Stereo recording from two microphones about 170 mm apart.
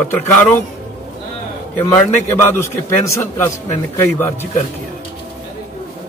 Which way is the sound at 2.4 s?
15° left (ahead or behind).